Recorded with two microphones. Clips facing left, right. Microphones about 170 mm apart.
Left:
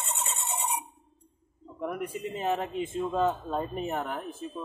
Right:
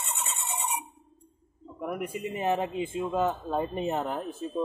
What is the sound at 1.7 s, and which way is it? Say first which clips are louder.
A man's voice: even; 5° right (ahead or behind).